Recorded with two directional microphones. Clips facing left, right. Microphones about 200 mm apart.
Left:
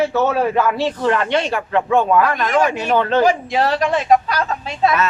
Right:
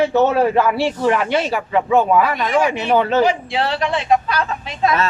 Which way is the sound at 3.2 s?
45° left (ahead or behind).